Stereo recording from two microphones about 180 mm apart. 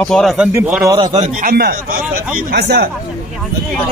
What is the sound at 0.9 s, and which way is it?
Speech, 20° right (ahead or behind).